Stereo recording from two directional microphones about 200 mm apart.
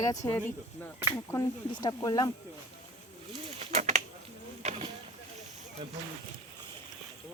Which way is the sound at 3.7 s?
35° right (ahead or behind).